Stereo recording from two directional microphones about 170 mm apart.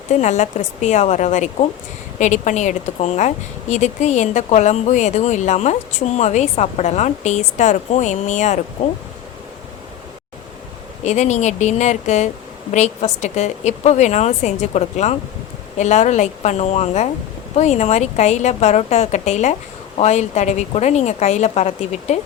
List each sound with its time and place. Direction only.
0.1 s a woman's voice: 45° left (ahead or behind)
11.0 s a woman's voice: 45° left (ahead or behind)